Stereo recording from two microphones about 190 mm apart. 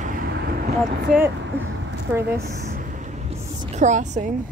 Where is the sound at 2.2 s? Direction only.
55° right (ahead or behind).